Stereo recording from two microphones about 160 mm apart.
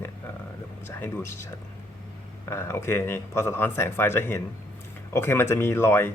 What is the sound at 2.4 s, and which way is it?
Speech, 15° left (ahead or behind).